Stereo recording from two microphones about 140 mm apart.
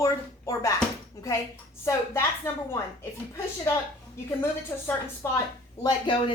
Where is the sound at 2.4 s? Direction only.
20° left (ahead or behind).